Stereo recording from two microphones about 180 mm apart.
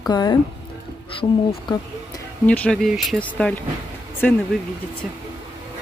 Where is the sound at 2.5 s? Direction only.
5° left (ahead or behind).